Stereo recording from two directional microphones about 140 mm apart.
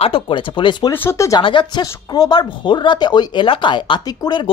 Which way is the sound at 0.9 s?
20° left (ahead or behind).